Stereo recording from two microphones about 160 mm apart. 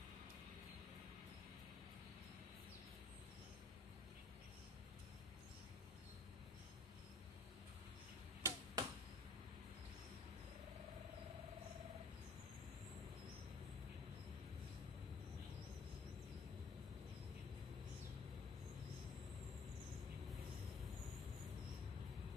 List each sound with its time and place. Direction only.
8.4 s arrow: 15° right (ahead or behind)